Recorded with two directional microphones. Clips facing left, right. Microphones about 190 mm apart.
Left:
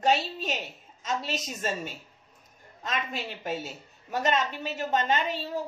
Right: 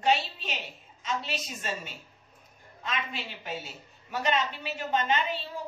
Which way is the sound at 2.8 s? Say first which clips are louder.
Left 2 dB; 45° left (ahead or behind).